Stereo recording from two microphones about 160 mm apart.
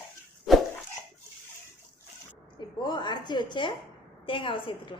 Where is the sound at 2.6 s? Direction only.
30° left (ahead or behind).